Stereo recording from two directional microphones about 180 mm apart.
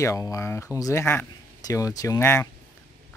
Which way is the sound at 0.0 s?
15° left (ahead or behind).